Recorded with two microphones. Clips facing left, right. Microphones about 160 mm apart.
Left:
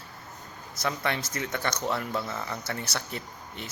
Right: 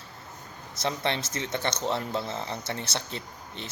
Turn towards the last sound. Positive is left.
turn(degrees=-25)  # may be behind; listen again after turning